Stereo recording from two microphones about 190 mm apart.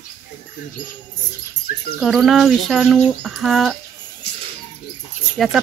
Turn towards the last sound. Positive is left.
turn(degrees=0)  # may be behind; listen again after turning